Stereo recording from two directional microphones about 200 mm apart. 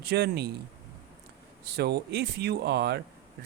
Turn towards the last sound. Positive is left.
turn(degrees=-55)  # may be behind; listen again after turning